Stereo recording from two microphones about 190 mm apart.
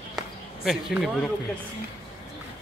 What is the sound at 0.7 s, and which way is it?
Speech, centre (ahead or behind).